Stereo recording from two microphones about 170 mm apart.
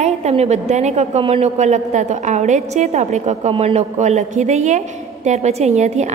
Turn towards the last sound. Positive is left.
turn(degrees=-40)  # may be behind; listen again after turning